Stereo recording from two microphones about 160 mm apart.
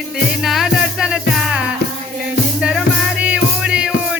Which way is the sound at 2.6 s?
5° right (ahead or behind).